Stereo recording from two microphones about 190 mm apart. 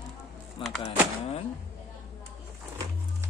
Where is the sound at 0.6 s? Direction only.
30° left (ahead or behind).